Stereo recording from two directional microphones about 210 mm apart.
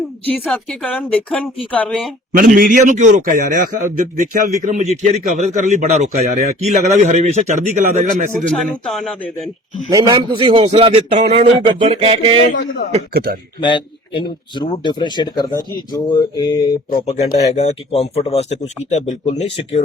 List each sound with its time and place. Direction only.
0.3 s speech: 5° left (ahead or behind)
2.3 s a man's voice: 40° right (ahead or behind)
8.9 s speech: centre (ahead or behind)
9.9 s a man's voice: 15° right (ahead or behind)
13.6 s speech: 25° left (ahead or behind)
16.9 s speech: 35° left (ahead or behind)